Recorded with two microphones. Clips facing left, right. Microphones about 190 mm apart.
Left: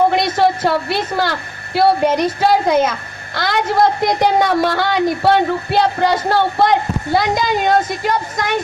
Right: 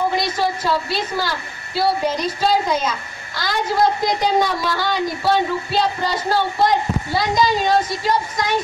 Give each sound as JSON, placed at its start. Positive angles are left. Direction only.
{"t": 0.1, "sound": "a woman's voice", "side_deg": 60}